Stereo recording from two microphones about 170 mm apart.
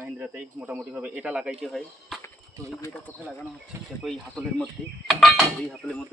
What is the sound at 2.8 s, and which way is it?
Speech, 10° left (ahead or behind).